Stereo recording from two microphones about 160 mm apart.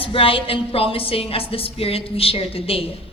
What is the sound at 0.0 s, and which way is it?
A woman's voice, 35° left (ahead or behind).